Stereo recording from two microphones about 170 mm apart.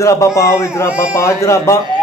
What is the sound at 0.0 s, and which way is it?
Speech, 20° left (ahead or behind).